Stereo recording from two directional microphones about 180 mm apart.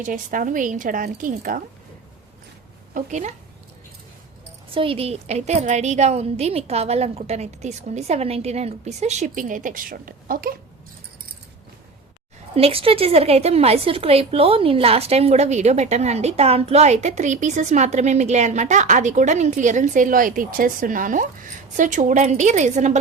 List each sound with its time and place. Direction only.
0.0 s a woman's voice: 45° right (ahead or behind)
2.9 s a woman's voice: 40° right (ahead or behind)
4.7 s a woman's voice: 30° right (ahead or behind); by 10.6 s 55° right (ahead or behind)
12.5 s a woman's voice: 30° right (ahead or behind)